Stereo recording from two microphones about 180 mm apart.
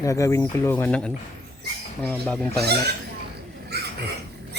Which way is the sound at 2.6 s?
65° right (ahead or behind).